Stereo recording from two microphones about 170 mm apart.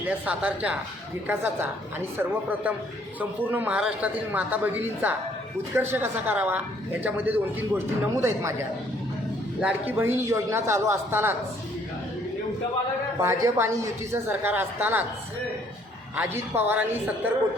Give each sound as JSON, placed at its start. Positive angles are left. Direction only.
{"t": 0.1, "sound": "a woman's voice", "side_deg": -10}
{"t": 13.1, "sound": "a woman's voice", "side_deg": -15}
{"t": 16.1, "sound": "a woman's voice", "side_deg": -10}